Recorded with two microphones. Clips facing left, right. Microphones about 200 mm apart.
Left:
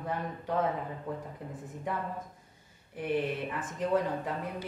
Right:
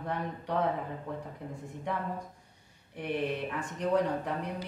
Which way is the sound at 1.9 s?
5° left (ahead or behind).